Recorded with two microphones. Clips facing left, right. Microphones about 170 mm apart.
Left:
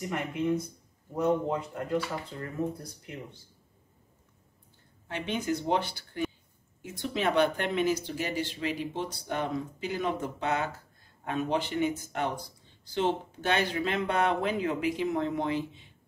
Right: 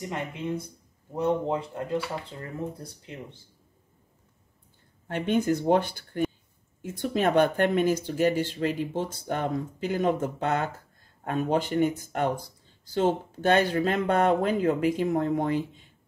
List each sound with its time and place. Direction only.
0.1 s speech: 25° right (ahead or behind)
5.0 s speech: 50° right (ahead or behind)